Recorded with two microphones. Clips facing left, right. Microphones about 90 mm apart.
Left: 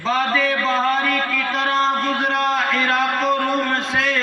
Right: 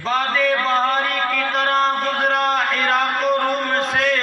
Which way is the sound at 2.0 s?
45° right (ahead or behind).